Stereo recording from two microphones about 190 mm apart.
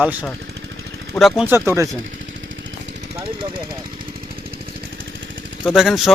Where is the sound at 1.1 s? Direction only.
Centre (ahead or behind).